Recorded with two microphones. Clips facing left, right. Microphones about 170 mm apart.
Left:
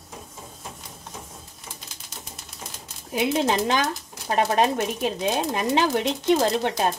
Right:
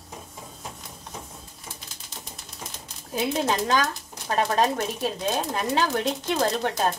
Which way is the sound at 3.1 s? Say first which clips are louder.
Left 3 dB; 20° left (ahead or behind).